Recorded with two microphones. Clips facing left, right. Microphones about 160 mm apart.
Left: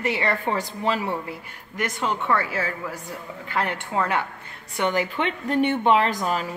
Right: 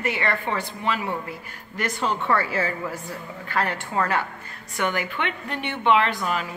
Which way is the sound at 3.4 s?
20° left (ahead or behind).